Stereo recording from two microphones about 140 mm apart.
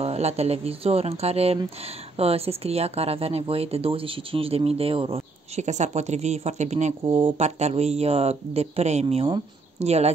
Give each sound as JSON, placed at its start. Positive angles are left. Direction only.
{"t": 0.0, "sound": "speech", "side_deg": -50}
{"t": 7.0, "sound": "speech", "side_deg": -40}
{"t": 7.4, "sound": "speech", "side_deg": -50}
{"t": 9.0, "sound": "speech", "side_deg": -35}